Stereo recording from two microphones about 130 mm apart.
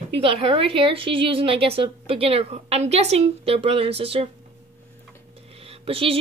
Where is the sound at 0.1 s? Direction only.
45° right (ahead or behind).